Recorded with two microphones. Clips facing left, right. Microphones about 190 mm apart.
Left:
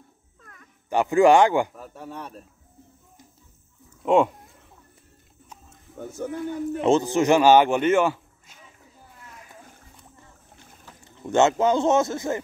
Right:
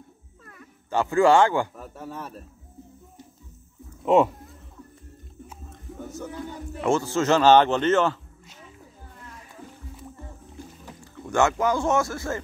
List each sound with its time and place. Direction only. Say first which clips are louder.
0.4 s music: right 4 dB; 5° right (ahead or behind)
0.8 s a man's voice: left 2 dB; 15° left (ahead or behind)
1.8 s a man's voice: right 1 dB; centre (ahead or behind)
4.0 s speech: even; centre (ahead or behind)
6.1 s music: left 6 dB; 55° left (ahead or behind)
6.8 s a man's voice: left 3 dB; 20° left (ahead or behind)
11.2 s speech: left 3 dB; 25° left (ahead or behind)